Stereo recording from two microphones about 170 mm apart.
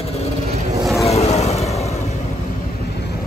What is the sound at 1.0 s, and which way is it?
Vehicle, 40° left (ahead or behind).